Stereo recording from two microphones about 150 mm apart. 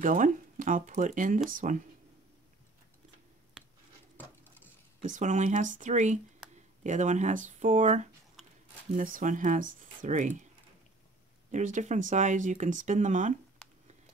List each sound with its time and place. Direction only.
0.0 s speech: 60° right (ahead or behind)
5.0 s speech: 55° right (ahead or behind)
11.5 s speech: 55° right (ahead or behind)